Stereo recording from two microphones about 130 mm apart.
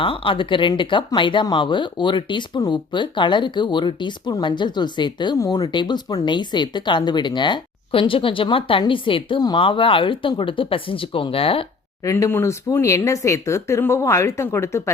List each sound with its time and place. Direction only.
0.0 s speech: 40° left (ahead or behind)
12.0 s speech: 20° left (ahead or behind)